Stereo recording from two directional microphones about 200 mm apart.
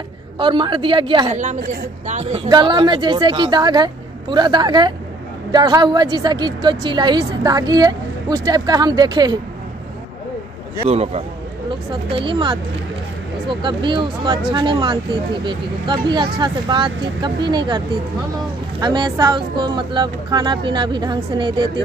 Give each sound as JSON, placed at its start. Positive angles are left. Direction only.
{"t": 0.4, "sound": "a woman's voice", "side_deg": -25}
{"t": 2.5, "sound": "a woman's voice", "side_deg": -20}
{"t": 10.9, "sound": "a woman's voice", "side_deg": -30}